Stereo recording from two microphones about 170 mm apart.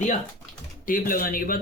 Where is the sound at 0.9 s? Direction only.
55° left (ahead or behind).